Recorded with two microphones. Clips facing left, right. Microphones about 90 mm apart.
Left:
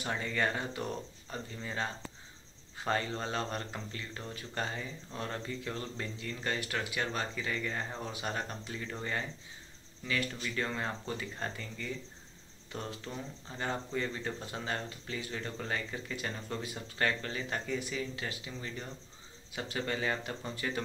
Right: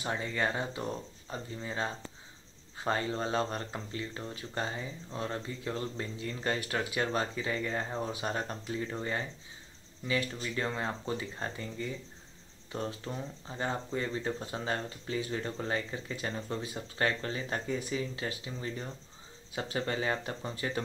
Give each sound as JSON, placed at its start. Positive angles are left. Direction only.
{"t": 0.0, "sound": "speech", "side_deg": -25}
{"t": 10.0, "sound": "speech", "side_deg": -25}